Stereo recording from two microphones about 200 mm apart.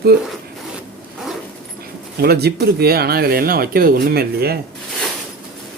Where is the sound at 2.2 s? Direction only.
50° right (ahead or behind).